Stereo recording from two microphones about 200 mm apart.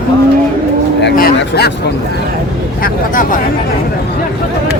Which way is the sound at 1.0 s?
55° left (ahead or behind).